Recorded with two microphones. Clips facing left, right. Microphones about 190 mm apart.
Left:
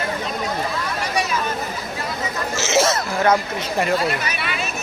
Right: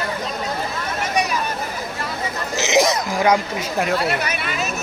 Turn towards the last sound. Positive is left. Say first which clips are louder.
# right 2 dB
turn(degrees=-45)  # may be behind; listen again after turning